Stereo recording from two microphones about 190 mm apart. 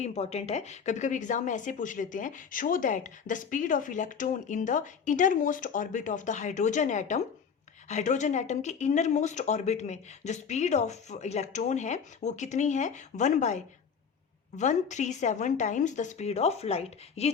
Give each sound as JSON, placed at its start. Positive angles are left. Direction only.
{"t": 0.0, "sound": "speech", "side_deg": 35}